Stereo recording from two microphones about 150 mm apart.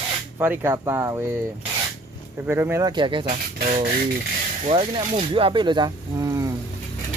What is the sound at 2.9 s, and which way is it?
Speech, 30° right (ahead or behind).